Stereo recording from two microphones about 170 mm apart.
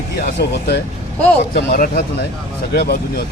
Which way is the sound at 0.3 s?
80° left.